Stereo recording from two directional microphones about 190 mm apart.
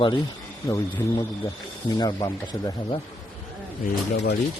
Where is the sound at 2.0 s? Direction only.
20° left (ahead or behind).